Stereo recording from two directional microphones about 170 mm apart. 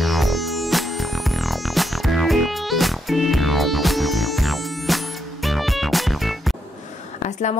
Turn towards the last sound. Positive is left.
turn(degrees=45)  # may be behind; listen again after turning